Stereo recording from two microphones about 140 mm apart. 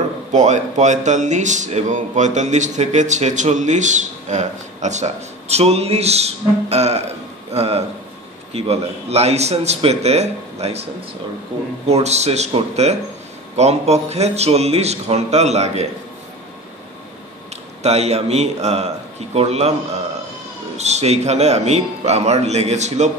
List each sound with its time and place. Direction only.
0.3 s a man's voice: 55° right (ahead or behind)
11.9 s a man's voice: 50° right (ahead or behind)
17.8 s a man's voice: 50° right (ahead or behind)